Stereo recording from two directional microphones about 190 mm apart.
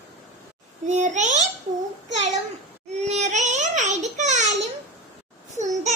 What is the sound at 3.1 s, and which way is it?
Child singing, 40° right (ahead or behind).